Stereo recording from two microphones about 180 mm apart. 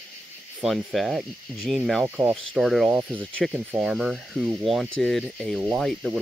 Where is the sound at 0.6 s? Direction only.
Centre (ahead or behind).